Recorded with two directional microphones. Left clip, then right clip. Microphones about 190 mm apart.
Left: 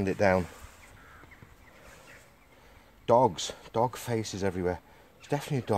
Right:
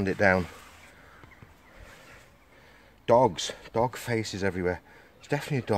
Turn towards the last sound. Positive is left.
turn(degrees=0)  # may be behind; listen again after turning